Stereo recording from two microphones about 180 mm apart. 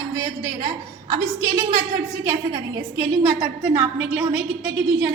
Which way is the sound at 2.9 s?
15° right (ahead or behind).